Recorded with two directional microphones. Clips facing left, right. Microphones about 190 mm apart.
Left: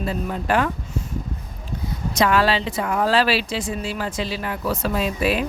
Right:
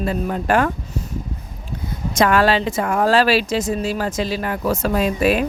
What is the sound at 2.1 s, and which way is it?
Speech, 50° right (ahead or behind).